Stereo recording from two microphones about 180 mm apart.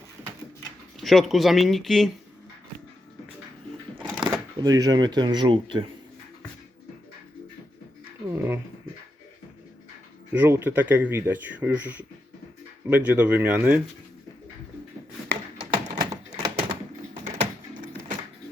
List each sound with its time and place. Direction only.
0.9 s speech: centre (ahead or behind)
4.2 s speech: 20° right (ahead or behind)
8.3 s a sound: 10° right (ahead or behind)
10.3 s speech: 10° right (ahead or behind)
15.7 s typewriter: 25° right (ahead or behind)